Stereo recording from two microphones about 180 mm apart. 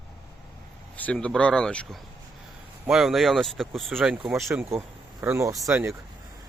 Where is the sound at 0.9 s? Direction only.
5° left (ahead or behind); by 6.0 s 15° right (ahead or behind).